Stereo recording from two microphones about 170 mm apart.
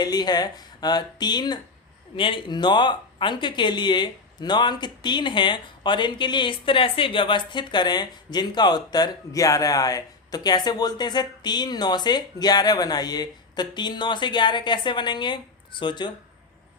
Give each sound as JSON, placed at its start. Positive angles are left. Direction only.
{"t": 0.0, "sound": "speech", "side_deg": 25}